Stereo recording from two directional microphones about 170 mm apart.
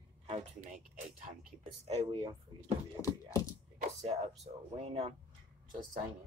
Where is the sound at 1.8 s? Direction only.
30° right (ahead or behind).